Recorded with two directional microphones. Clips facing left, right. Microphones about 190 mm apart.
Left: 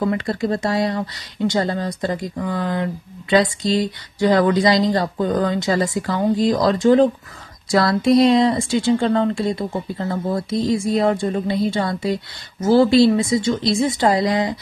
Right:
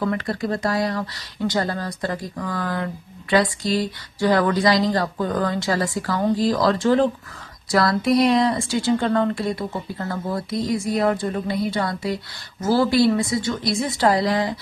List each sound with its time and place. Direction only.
0.0 s speech: 20° left (ahead or behind)